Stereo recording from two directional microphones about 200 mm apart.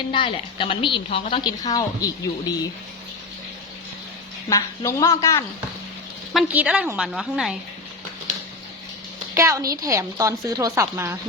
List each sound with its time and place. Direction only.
0.1 s a woman's voice: 25° left (ahead or behind)
4.4 s a woman's voice: 15° left (ahead or behind)
6.3 s a woman's voice: 5° right (ahead or behind)
9.3 s a woman's voice: 15° right (ahead or behind)